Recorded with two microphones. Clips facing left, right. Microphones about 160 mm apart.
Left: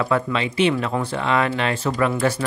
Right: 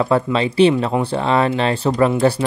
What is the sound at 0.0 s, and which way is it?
Speech, 30° right (ahead or behind).